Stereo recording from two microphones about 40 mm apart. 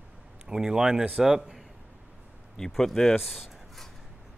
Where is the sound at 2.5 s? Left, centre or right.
Centre.